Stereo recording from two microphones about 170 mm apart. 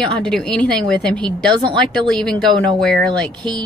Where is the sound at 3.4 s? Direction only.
25° right (ahead or behind).